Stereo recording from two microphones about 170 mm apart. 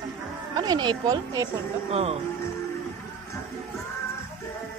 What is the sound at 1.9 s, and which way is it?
Speech, 35° right (ahead or behind).